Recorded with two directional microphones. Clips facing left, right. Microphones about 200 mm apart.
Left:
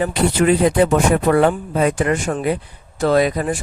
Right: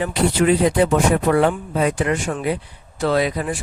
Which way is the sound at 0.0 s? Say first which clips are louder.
Left 1 dB; 50° left (ahead or behind).